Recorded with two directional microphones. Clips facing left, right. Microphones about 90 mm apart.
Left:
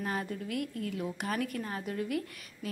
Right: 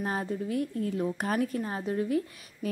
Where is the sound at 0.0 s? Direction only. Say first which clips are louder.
Right 4 dB; 30° right (ahead or behind).